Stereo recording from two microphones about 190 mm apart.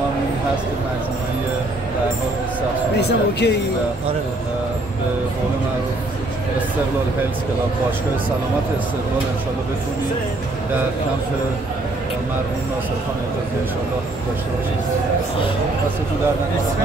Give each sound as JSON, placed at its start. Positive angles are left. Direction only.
{"t": 3.0, "sound": "speech", "side_deg": 60}